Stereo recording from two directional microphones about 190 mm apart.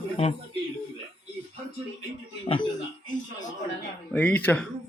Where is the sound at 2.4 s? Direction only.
30° left (ahead or behind).